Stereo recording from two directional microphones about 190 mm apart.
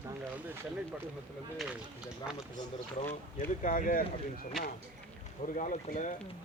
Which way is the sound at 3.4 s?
45° left (ahead or behind).